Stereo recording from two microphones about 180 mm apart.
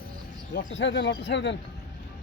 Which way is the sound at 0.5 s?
85° left.